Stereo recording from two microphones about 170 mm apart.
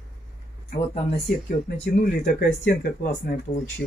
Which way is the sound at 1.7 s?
50° left (ahead or behind).